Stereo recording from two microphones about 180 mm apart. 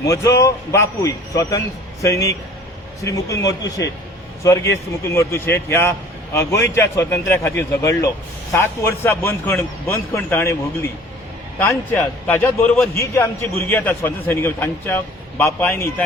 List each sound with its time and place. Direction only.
0.0 s a man's voice: 20° left (ahead or behind)
11.6 s a man's voice: 10° left (ahead or behind)